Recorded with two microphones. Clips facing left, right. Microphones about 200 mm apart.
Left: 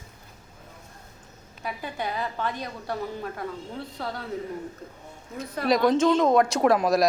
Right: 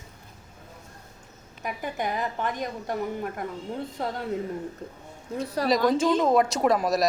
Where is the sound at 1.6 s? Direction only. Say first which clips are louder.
Right 2 dB; 15° right (ahead or behind).